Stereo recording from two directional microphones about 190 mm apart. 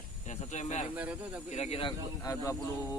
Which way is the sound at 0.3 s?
35° left (ahead or behind).